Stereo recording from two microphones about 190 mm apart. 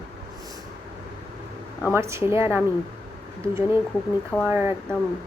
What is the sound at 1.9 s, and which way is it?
Speech, 15° right (ahead or behind).